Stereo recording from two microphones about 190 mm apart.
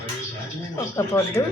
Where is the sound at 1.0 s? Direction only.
15° left (ahead or behind).